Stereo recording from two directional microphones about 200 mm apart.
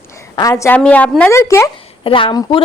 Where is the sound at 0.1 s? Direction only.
15° left (ahead or behind).